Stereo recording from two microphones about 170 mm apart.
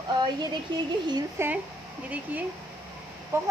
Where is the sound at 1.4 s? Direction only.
15° right (ahead or behind).